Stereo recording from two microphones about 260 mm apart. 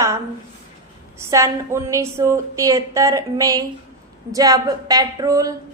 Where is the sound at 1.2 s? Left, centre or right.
Centre.